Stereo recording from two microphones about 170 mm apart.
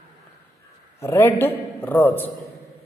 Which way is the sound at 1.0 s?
15° left (ahead or behind).